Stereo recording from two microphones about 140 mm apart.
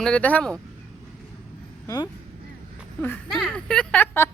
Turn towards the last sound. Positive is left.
turn(degrees=10)  # may be behind; listen again after turning